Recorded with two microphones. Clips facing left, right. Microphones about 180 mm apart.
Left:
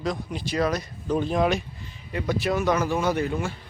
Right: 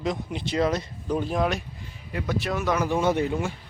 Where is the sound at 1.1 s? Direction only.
5° right (ahead or behind).